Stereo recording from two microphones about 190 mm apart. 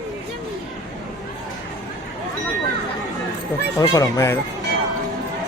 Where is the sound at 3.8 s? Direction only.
20° left (ahead or behind).